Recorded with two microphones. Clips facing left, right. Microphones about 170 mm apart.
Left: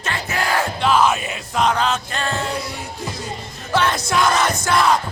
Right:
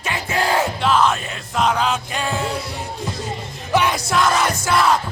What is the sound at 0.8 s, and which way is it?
Music, centre (ahead or behind).